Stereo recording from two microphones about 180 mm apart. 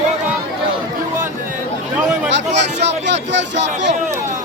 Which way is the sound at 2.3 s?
75° right (ahead or behind).